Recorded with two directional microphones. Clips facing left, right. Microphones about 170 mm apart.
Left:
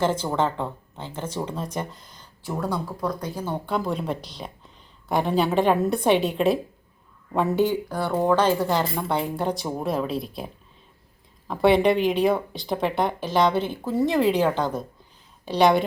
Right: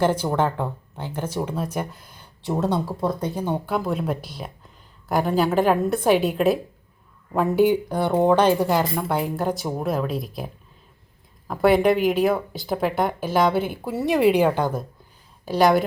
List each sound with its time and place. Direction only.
0.0 s speech: 10° right (ahead or behind)
2.4 s speech: 25° right (ahead or behind)
3.7 s speech: 5° right (ahead or behind)